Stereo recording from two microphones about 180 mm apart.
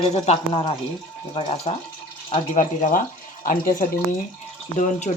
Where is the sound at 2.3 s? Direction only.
45° left (ahead or behind).